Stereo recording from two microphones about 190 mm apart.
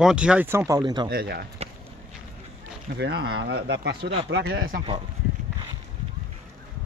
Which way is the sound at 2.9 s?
60° right (ahead or behind).